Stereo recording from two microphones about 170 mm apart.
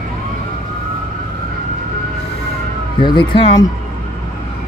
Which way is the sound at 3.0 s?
30° left (ahead or behind).